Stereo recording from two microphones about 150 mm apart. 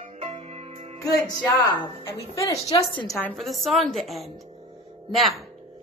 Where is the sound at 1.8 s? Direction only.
15° left (ahead or behind).